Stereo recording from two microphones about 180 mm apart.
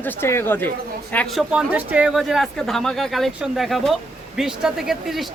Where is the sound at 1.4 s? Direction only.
5° right (ahead or behind).